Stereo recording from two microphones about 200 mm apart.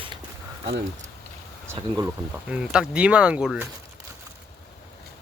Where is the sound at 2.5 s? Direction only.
5° right (ahead or behind).